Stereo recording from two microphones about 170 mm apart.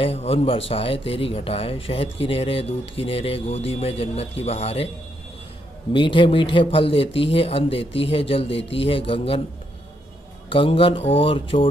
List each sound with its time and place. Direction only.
0.0 s speech: 35° left (ahead or behind)
5.9 s speech: 30° left (ahead or behind)
10.5 s speech: 30° left (ahead or behind)